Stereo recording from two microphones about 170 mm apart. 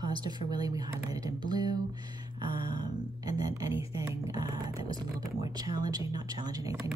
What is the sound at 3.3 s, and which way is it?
A woman's voice, 20° right (ahead or behind).